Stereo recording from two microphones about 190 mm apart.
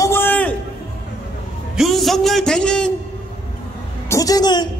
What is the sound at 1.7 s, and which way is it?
A man's voice, centre (ahead or behind).